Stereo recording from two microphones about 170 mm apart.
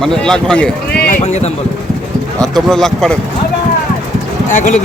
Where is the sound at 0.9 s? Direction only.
65° left (ahead or behind).